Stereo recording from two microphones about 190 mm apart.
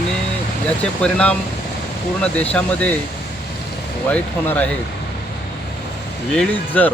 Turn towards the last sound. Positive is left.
turn(degrees=10)  # may be behind; listen again after turning